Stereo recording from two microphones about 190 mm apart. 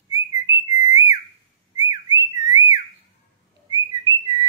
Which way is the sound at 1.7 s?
20° right (ahead or behind).